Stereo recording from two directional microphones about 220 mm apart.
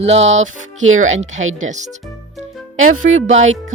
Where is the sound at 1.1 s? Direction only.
30° right (ahead or behind).